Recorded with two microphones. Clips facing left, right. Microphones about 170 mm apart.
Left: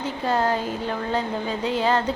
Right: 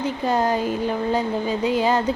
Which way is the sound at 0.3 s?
15° right (ahead or behind).